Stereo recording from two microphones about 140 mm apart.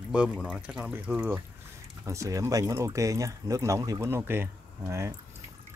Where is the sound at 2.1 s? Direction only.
25° right (ahead or behind).